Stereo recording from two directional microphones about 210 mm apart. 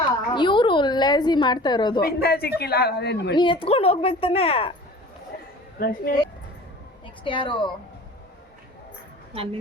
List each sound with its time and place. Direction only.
0.3 s a sound: 20° left (ahead or behind)
2.2 s speech: 45° left (ahead or behind)
3.3 s a woman's voice: 25° left (ahead or behind)
5.8 s speech: 45° left (ahead or behind)
7.3 s a woman's voice: 25° left (ahead or behind)
9.3 s speech: 25° right (ahead or behind)